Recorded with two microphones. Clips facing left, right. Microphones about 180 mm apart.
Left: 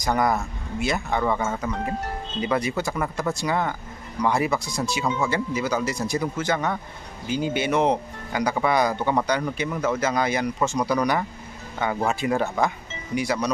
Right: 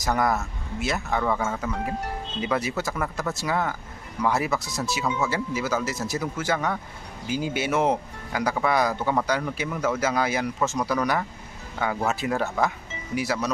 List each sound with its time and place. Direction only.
0.0 s speech: centre (ahead or behind)